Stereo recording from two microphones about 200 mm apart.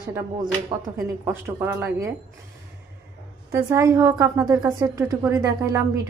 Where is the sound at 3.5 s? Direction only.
15° right (ahead or behind).